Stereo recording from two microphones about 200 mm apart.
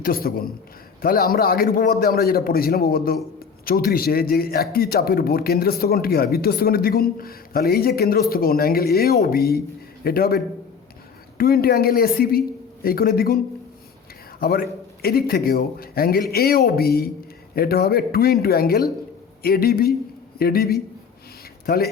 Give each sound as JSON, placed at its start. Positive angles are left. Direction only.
{"t": 0.0, "sound": "speech", "side_deg": 50}